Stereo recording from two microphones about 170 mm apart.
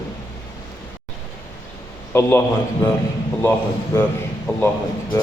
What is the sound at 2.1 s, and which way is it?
A man's voice, 15° left (ahead or behind).